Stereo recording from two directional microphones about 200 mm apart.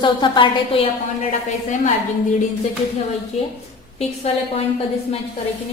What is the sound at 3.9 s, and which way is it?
Speech, 30° left (ahead or behind).